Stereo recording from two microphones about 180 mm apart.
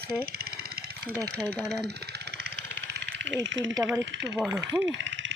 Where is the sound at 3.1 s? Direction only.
90° right.